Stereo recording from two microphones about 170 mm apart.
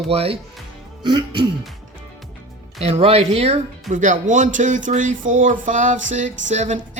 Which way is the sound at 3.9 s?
45° right (ahead or behind).